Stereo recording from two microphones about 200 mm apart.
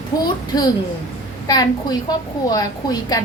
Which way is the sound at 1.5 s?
20° left (ahead or behind).